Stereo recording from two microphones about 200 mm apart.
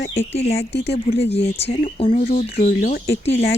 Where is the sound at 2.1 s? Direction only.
45° left (ahead or behind).